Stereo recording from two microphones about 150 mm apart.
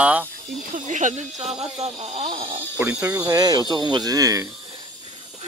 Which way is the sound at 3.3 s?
25° right (ahead or behind).